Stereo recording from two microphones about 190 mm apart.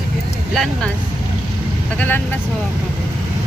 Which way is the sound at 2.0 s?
10° left (ahead or behind).